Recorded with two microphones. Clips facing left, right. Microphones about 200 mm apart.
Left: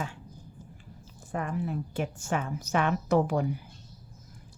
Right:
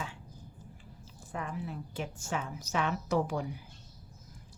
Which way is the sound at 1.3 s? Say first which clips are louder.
Left 6 dB; 50° left (ahead or behind).